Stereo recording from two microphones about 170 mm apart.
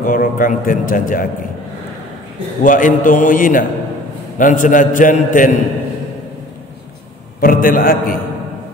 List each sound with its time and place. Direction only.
0.0 s a man's voice: 55° left (ahead or behind)
2.6 s a man's voice: 50° left (ahead or behind)
7.3 s a man's voice: 55° left (ahead or behind)